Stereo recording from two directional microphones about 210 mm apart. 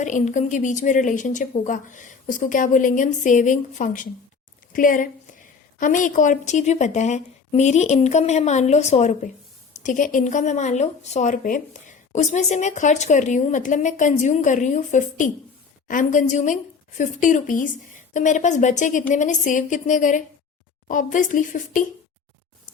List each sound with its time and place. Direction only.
0.0 s speech: 35° left (ahead or behind)